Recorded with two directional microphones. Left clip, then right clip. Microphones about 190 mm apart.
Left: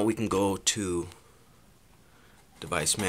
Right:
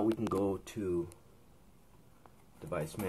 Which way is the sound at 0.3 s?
30° left (ahead or behind).